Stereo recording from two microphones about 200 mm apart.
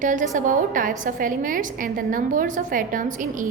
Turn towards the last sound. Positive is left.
turn(degrees=-40)  # may be behind; listen again after turning